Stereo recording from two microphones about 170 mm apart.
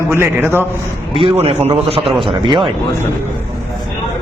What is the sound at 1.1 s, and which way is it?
A man's voice, 35° right (ahead or behind).